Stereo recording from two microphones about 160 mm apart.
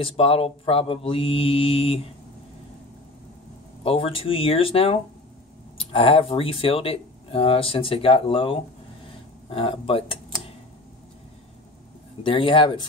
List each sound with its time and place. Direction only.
0.0 s speech: 35° left (ahead or behind)
3.8 s speech: 35° left (ahead or behind)
12.2 s speech: 30° left (ahead or behind)